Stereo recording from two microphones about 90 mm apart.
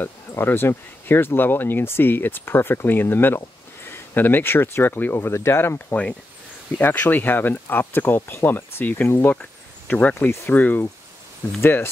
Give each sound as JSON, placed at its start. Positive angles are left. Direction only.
{"t": 0.0, "sound": "speech", "side_deg": 25}